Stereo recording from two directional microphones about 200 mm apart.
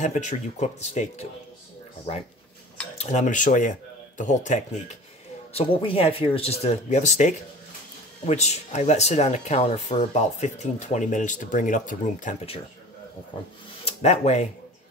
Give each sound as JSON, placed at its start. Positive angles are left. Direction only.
{"t": 0.0, "sound": "speech", "side_deg": 35}
{"t": 3.0, "sound": "speech", "side_deg": 35}
{"t": 13.8, "sound": "speech", "side_deg": 35}